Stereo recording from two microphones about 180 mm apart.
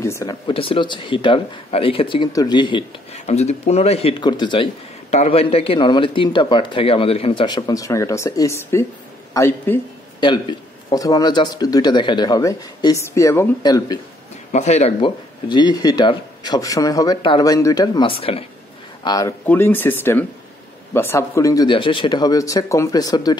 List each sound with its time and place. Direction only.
0.0 s speech: 15° left (ahead or behind)
10.2 s speech: 25° left (ahead or behind)
14.5 s speech: 40° left (ahead or behind)
19.0 s speech: 20° left (ahead or behind)